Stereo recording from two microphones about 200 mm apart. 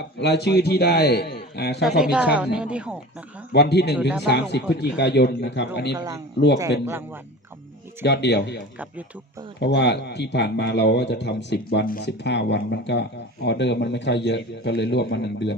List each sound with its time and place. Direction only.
0.2 s a man's voice: 55° left (ahead or behind)
2.0 s a woman's voice: 5° right (ahead or behind)
3.5 s speech: 55° left (ahead or behind)
6.0 s speech: 15° right (ahead or behind)
8.0 s speech: 60° left (ahead or behind)